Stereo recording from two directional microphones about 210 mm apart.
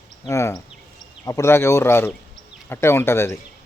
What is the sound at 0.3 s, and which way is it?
Speech, 15° left (ahead or behind).